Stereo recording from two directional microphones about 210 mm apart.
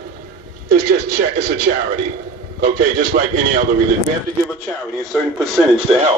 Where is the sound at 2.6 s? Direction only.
45° right (ahead or behind).